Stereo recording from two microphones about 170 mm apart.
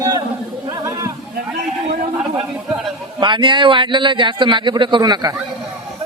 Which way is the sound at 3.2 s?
30° right (ahead or behind).